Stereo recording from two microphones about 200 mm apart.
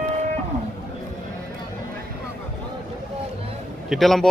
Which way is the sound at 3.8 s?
Centre (ahead or behind).